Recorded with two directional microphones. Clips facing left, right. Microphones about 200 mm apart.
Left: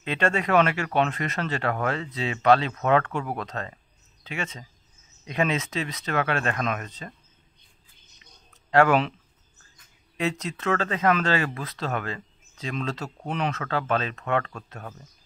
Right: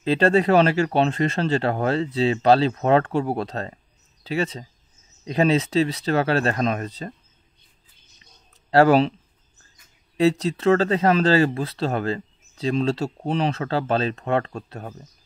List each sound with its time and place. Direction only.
0.0 s speech: 35° right (ahead or behind)
8.6 s speech: 35° right (ahead or behind)
10.1 s speech: 35° right (ahead or behind)